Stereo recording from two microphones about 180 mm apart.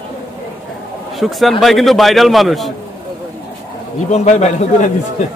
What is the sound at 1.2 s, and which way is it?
A man's voice, centre (ahead or behind).